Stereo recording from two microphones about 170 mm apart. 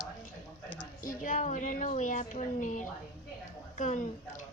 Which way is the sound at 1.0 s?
55° left (ahead or behind).